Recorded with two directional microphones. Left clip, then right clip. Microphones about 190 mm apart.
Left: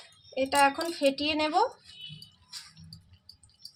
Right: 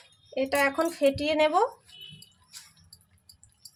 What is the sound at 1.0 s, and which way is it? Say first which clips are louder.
Speech: right 3 dB; 30° right (ahead or behind).